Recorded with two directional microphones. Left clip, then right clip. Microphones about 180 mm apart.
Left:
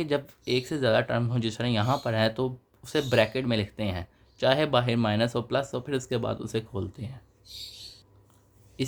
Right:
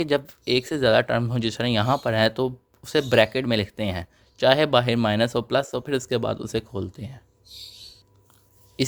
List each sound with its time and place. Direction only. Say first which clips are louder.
0.0 s speech: right 5 dB; 40° right (ahead or behind)